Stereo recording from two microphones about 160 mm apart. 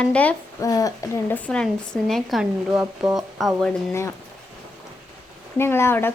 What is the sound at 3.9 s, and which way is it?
Speech, 15° left (ahead or behind).